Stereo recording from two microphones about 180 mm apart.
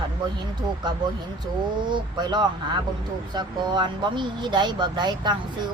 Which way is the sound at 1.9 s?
25° right (ahead or behind).